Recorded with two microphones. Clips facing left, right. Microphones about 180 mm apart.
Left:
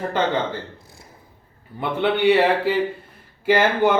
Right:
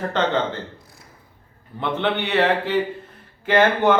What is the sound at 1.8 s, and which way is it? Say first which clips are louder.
A man's voice: left 4 dB; 10° left (ahead or behind).